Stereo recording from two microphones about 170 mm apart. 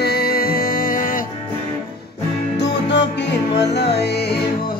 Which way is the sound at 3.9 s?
70° left (ahead or behind).